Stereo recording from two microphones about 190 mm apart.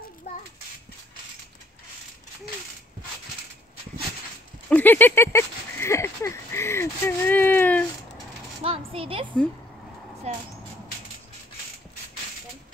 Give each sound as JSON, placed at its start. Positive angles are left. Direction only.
{"t": 4.6, "sound": "speech", "side_deg": 10}
{"t": 8.6, "sound": "speech", "side_deg": -30}